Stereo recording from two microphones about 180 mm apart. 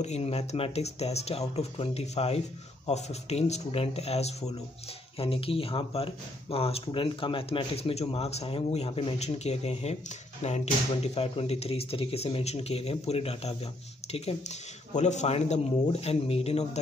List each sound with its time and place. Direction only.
0.0 s speech: 35° left (ahead or behind)